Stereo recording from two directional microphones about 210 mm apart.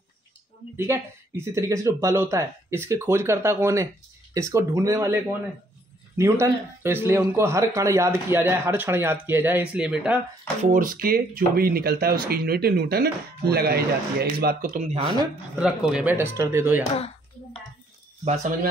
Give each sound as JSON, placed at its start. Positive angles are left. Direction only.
{"t": 0.7, "sound": "speech", "side_deg": -10}
{"t": 6.1, "sound": "speech", "side_deg": -15}
{"t": 10.6, "sound": "speech", "side_deg": -40}
{"t": 15.6, "sound": "speech", "side_deg": -5}
{"t": 18.2, "sound": "speech", "side_deg": -30}